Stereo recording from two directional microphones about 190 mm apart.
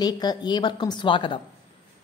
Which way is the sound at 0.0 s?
20° left (ahead or behind).